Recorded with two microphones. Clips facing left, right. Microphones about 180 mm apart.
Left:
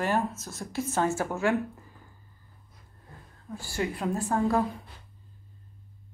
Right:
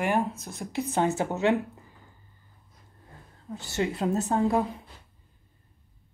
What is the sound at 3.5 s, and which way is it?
A woman's voice, 20° right (ahead or behind).